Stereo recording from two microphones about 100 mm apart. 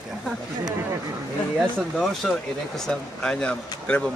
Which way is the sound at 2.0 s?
5° left (ahead or behind).